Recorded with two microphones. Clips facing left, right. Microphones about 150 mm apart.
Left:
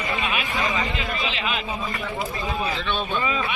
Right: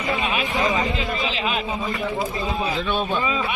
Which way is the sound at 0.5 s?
20° right (ahead or behind).